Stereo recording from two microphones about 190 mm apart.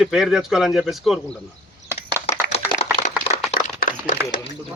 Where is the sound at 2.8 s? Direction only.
30° left (ahead or behind).